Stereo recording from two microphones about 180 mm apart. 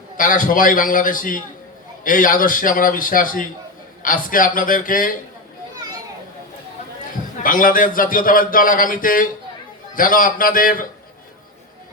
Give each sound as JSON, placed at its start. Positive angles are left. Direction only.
{"t": 0.2, "sound": "a man's voice", "side_deg": 50}
{"t": 7.4, "sound": "a man's voice", "side_deg": 50}